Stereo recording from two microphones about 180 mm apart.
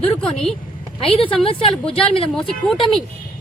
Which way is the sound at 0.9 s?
30° left (ahead or behind).